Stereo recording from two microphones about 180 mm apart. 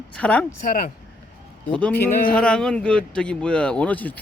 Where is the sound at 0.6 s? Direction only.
50° left (ahead or behind).